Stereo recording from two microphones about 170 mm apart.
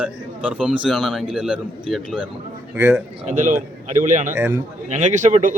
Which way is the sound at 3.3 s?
50° right (ahead or behind).